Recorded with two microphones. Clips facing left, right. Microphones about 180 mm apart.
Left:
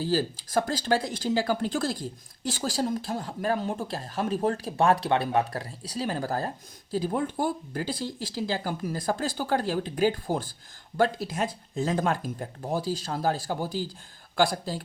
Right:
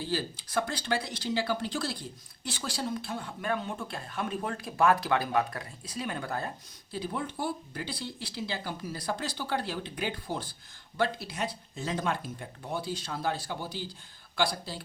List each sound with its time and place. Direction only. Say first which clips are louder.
0.0 s speech: left 6 dB; 40° left (ahead or behind)